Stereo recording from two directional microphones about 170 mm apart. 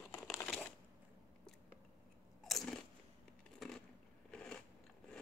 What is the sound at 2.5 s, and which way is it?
Crunch, centre (ahead or behind).